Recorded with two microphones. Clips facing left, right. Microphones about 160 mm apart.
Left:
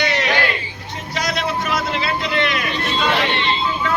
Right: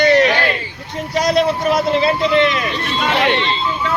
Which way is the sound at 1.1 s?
35° right (ahead or behind).